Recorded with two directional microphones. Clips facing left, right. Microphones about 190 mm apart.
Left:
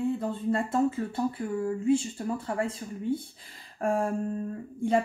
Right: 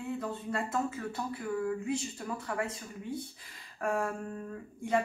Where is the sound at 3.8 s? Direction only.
30° left (ahead or behind).